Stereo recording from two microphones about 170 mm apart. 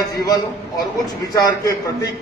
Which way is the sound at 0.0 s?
20° left (ahead or behind).